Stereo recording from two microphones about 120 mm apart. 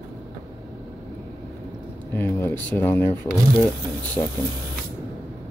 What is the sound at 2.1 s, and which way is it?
Speech, 20° left (ahead or behind).